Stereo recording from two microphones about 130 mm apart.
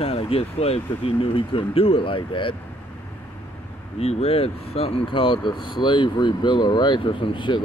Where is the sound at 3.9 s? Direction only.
50° left (ahead or behind).